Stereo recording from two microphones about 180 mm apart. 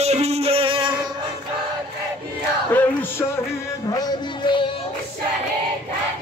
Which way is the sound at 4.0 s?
25° left (ahead or behind).